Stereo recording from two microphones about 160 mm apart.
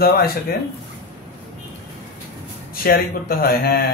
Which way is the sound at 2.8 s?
70° left (ahead or behind).